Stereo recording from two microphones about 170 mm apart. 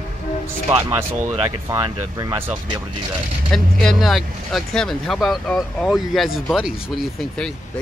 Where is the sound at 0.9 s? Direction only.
15° right (ahead or behind).